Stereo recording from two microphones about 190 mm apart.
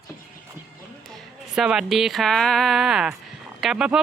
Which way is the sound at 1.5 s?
Centre (ahead or behind).